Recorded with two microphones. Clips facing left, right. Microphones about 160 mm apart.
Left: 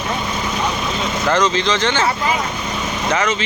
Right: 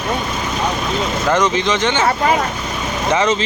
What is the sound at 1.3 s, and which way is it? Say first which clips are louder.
Speech: right 1 dB; 20° right (ahead or behind).